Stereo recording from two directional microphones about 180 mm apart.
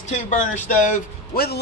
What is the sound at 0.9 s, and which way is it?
Speech, 60° left (ahead or behind).